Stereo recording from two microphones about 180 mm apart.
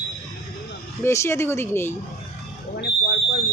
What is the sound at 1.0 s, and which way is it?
Speech, 15° left (ahead or behind).